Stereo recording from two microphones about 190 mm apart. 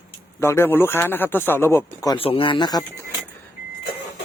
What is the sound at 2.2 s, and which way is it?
Speech, 30° left (ahead or behind).